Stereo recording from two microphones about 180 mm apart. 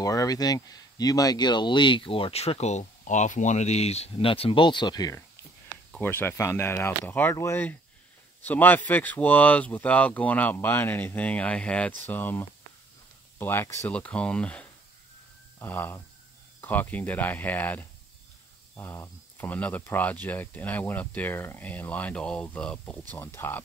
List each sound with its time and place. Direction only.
0.0 s speech: 20° left (ahead or behind)
5.9 s speech: 10° left (ahead or behind)